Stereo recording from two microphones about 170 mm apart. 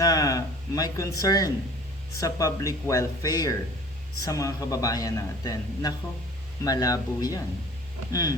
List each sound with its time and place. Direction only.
0.0 s a man's voice: 20° left (ahead or behind)